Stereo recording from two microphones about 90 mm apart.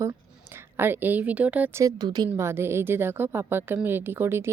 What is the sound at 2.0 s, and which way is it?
Speech, 50° right (ahead or behind).